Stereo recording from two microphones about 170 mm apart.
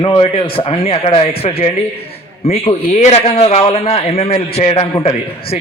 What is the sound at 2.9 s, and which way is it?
A man's voice, 40° left (ahead or behind).